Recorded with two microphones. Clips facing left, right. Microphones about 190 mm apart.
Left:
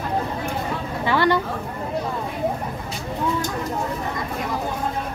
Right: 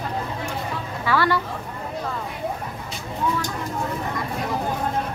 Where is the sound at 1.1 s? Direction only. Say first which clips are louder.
Left 2 dB; 20° left (ahead or behind).